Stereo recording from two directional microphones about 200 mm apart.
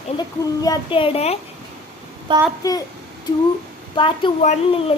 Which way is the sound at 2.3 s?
25° right (ahead or behind).